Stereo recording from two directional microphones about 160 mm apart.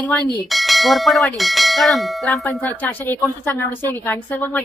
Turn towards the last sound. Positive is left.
turn(degrees=10)  # may be behind; listen again after turning